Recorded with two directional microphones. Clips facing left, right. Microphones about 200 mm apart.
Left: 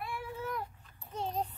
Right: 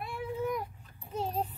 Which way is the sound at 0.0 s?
15° right (ahead or behind).